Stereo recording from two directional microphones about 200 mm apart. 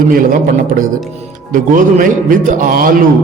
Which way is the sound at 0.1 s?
45° right (ahead or behind).